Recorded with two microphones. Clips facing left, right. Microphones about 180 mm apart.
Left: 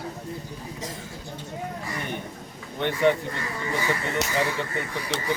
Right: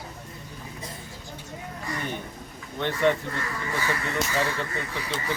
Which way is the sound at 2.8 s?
15° left (ahead or behind).